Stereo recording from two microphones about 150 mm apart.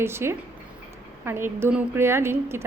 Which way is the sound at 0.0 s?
15° right (ahead or behind).